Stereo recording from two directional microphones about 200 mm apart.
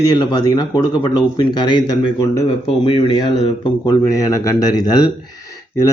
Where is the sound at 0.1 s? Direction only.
20° left (ahead or behind).